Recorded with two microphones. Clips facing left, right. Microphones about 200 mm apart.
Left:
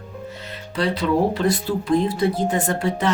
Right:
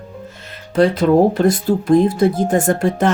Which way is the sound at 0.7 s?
50° right (ahead or behind).